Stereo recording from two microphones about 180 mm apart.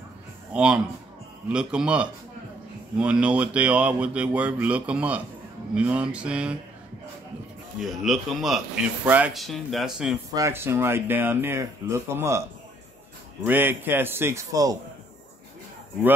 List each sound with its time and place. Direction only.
0.5 s a man's voice: 5° right (ahead or behind)
7.8 s a man's voice: centre (ahead or behind)
10.3 s speech: 15° right (ahead or behind)